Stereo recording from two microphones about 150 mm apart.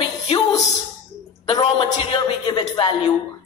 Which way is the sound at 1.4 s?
30° left (ahead or behind).